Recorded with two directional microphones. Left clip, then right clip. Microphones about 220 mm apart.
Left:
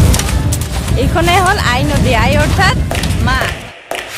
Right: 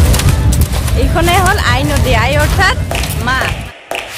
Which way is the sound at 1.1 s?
15° left (ahead or behind).